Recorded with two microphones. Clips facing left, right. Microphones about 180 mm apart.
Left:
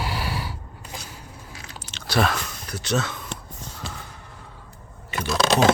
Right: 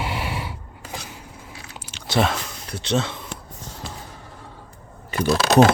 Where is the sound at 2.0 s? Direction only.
20° right (ahead or behind).